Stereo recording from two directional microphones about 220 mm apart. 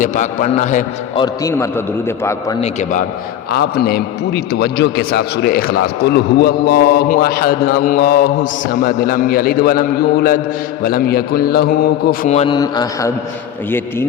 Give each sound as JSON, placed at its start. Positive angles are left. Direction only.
{"t": 0.0, "sound": "a man's voice", "side_deg": 35}
{"t": 1.2, "sound": "a man's voice", "side_deg": 15}
{"t": 3.8, "sound": "a man's voice", "side_deg": 45}
{"t": 12.5, "sound": "a man's voice", "side_deg": 15}